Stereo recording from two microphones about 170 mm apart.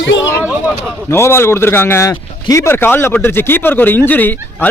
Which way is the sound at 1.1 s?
15° left (ahead or behind).